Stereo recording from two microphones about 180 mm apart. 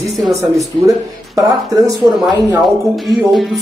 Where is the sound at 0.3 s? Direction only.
15° right (ahead or behind).